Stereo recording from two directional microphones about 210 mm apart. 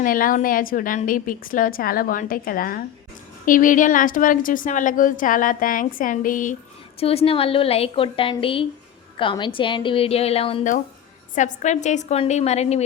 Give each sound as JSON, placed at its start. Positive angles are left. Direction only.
{"t": 0.0, "sound": "a woman's voice", "side_deg": 40}
{"t": 7.0, "sound": "a woman's voice", "side_deg": 30}